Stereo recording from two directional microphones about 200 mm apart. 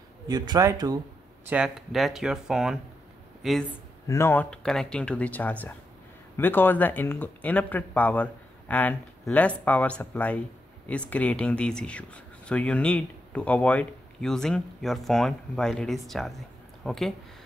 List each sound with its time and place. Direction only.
0.3 s speech: 20° right (ahead or behind)
1.4 s speech: 5° right (ahead or behind)
4.1 s speech: 10° left (ahead or behind)